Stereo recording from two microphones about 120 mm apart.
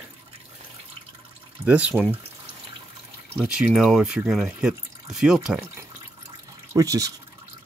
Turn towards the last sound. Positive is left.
turn(degrees=-30)  # may be behind; listen again after turning